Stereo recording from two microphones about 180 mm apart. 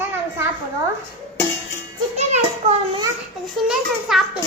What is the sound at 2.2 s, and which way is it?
Music, 40° right (ahead or behind).